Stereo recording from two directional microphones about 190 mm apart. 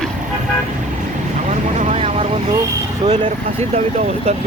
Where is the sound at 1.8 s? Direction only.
30° right (ahead or behind).